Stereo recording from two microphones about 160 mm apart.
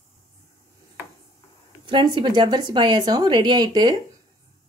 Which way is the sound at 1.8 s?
30° right (ahead or behind).